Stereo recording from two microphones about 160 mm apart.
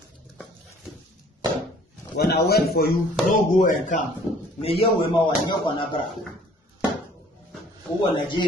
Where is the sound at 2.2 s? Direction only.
75° left (ahead or behind).